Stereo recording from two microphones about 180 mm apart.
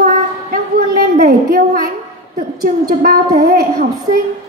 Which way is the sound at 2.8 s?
55° right (ahead or behind).